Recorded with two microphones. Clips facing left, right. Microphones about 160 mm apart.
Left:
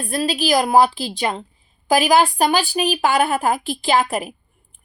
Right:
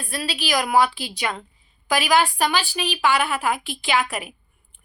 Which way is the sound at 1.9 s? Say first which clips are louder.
Left 5 dB; 40° left (ahead or behind).